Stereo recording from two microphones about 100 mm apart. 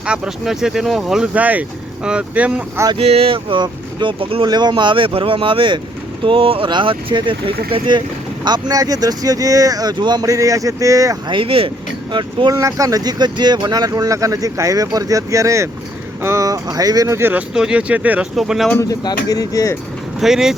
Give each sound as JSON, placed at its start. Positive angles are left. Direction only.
{"t": 0.0, "sound": "speech", "side_deg": -5}
{"t": 3.0, "sound": "speech", "side_deg": -80}
{"t": 4.4, "sound": "speech", "side_deg": -45}
{"t": 8.4, "sound": "speech", "side_deg": -45}
{"t": 11.3, "sound": "speech", "side_deg": -65}
{"t": 12.5, "sound": "speech", "side_deg": -30}
{"t": 17.2, "sound": "speech", "side_deg": -20}
{"t": 17.5, "sound": "speech", "side_deg": -10}
{"t": 18.3, "sound": "speech", "side_deg": 0}
{"t": 18.8, "sound": "speech", "side_deg": 40}
{"t": 20.1, "sound": "speech", "side_deg": -5}